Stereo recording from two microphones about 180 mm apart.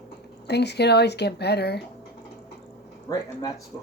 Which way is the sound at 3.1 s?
20° left (ahead or behind).